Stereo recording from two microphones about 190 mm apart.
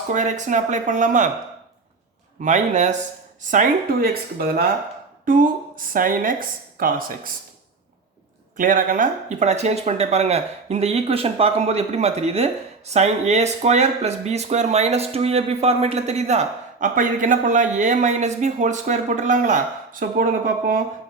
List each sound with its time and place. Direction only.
0.1 s speech: 40° right (ahead or behind)
2.4 s speech: 40° right (ahead or behind)
4.4 s a woman's voice: 50° right (ahead or behind)
8.5 s speech: 45° right (ahead or behind)